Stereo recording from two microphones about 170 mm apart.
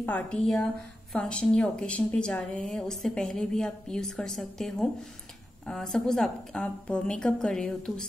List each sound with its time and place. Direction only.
0.0 s a woman's voice: 10° left (ahead or behind)